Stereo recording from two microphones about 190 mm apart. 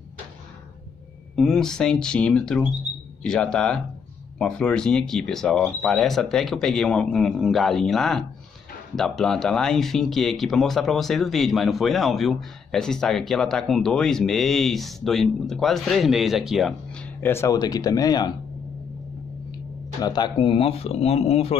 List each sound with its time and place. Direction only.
1.3 s speech: centre (ahead or behind); by 18.3 s 20° left (ahead or behind)
20.0 s speech: 20° left (ahead or behind)